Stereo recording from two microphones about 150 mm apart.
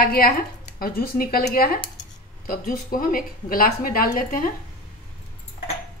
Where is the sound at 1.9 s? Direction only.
70° left (ahead or behind).